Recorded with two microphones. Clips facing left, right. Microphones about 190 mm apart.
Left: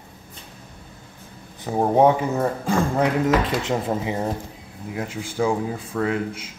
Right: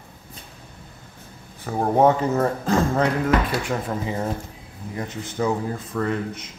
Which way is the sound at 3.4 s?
25° left (ahead or behind).